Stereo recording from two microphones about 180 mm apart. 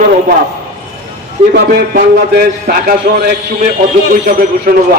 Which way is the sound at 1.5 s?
60° right (ahead or behind).